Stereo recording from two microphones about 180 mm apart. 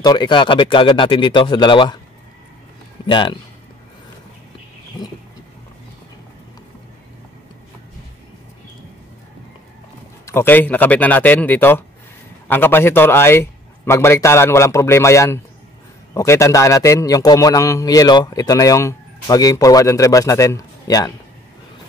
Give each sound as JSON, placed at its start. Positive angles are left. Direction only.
{"t": 0.0, "sound": "a man's voice", "side_deg": 25}
{"t": 3.1, "sound": "a man's voice", "side_deg": 25}
{"t": 10.2, "sound": "a man's voice", "side_deg": 15}